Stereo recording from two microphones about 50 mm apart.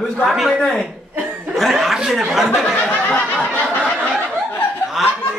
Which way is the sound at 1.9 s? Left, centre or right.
Centre.